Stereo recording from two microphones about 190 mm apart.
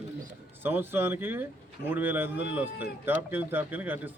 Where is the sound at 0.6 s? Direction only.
10° right (ahead or behind).